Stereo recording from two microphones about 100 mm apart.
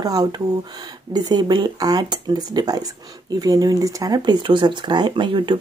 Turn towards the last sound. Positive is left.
turn(degrees=-55)  # may be behind; listen again after turning